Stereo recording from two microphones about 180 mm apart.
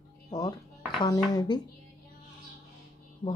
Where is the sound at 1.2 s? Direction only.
20° left (ahead or behind).